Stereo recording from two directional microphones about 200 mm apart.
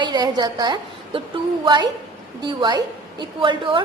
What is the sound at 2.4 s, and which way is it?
A woman's voice, 20° right (ahead or behind).